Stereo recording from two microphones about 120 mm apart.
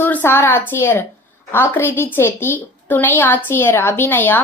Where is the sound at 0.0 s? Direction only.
15° left (ahead or behind).